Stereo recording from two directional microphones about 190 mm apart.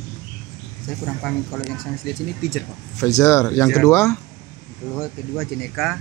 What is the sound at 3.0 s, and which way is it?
A man's voice, 15° left (ahead or behind).